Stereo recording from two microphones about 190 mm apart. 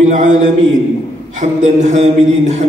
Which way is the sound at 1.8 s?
35° right (ahead or behind).